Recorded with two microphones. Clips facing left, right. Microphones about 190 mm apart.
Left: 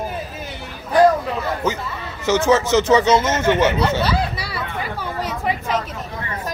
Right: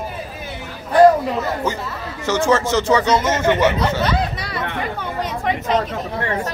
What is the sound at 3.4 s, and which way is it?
Speech, 5° left (ahead or behind).